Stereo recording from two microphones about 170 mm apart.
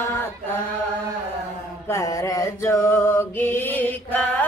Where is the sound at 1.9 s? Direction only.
20° left (ahead or behind).